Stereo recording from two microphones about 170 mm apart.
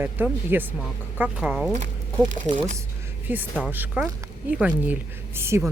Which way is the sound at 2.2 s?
45° right (ahead or behind).